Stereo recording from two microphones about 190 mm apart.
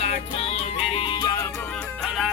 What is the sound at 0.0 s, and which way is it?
Music, 35° left (ahead or behind).